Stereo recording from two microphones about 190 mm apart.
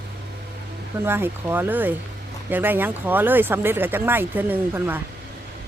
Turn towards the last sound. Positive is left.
turn(degrees=-10)  # may be behind; listen again after turning